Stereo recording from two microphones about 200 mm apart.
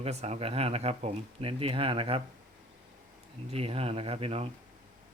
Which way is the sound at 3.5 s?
30° right (ahead or behind).